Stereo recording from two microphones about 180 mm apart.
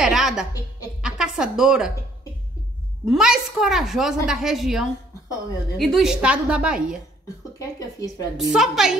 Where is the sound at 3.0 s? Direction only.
5° right (ahead or behind).